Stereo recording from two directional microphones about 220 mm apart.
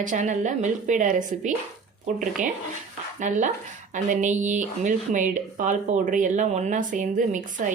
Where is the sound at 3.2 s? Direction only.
35° right (ahead or behind).